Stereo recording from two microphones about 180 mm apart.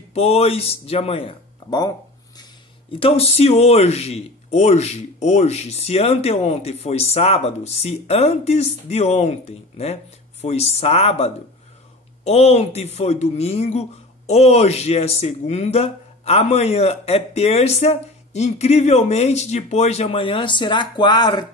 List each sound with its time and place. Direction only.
0.1 s speech: 35° left (ahead or behind)
3.0 s a man's voice: 35° left (ahead or behind)